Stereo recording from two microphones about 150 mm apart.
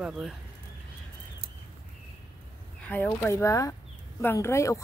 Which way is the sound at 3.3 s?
20° left (ahead or behind).